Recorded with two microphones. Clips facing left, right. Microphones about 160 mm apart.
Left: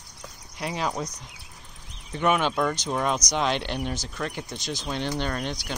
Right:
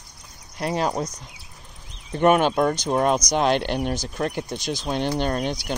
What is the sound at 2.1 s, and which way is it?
Speech, 50° right (ahead or behind).